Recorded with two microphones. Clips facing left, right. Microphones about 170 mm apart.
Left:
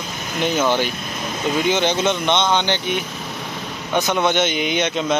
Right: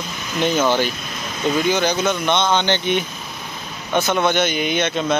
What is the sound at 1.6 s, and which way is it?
Speech, 25° left (ahead or behind).